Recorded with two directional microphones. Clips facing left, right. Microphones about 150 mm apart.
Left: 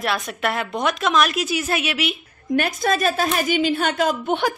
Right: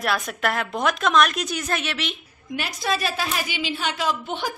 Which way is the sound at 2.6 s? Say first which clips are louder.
Left 5 dB; 50° left (ahead or behind).